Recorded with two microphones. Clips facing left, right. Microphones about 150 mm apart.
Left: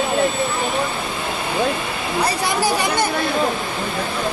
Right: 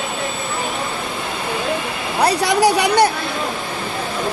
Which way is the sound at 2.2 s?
75° right (ahead or behind).